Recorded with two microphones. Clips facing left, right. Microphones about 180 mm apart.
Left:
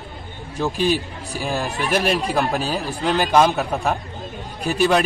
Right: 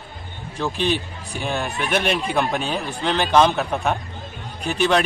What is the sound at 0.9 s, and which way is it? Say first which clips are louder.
Speech: left 2 dB; 35° left (ahead or behind).